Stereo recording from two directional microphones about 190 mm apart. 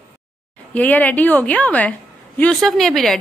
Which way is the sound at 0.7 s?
10° left (ahead or behind).